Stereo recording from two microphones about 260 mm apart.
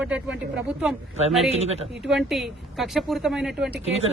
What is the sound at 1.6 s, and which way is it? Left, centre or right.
Speech, right.